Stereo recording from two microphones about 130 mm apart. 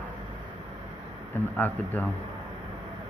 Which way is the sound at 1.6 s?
15° left (ahead or behind).